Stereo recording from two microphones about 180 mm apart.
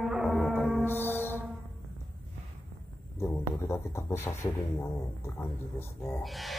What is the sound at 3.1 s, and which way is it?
Speech, 15° left (ahead or behind).